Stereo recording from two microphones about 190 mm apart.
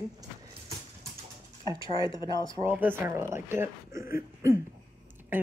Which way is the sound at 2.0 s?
25° left (ahead or behind).